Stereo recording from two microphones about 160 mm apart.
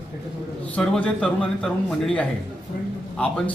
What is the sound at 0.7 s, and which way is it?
A man's voice, 5° left (ahead or behind).